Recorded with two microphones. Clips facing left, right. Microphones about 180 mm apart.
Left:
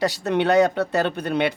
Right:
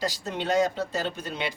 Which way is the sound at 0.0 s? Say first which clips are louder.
Left 9 dB; 65° left (ahead or behind).